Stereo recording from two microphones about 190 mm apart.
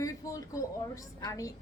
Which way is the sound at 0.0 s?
15° left (ahead or behind).